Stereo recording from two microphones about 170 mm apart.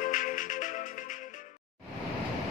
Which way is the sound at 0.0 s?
50° left (ahead or behind).